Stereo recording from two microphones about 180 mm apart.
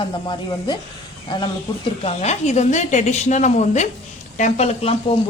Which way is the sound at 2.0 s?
35° left (ahead or behind).